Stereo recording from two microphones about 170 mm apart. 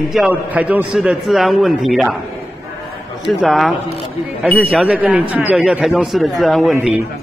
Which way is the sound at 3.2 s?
Centre (ahead or behind).